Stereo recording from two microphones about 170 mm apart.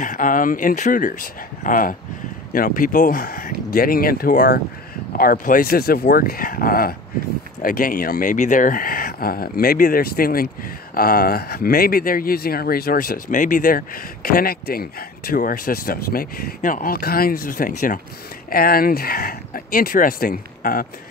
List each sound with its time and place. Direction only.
0.0 s speech: 50° left (ahead or behind)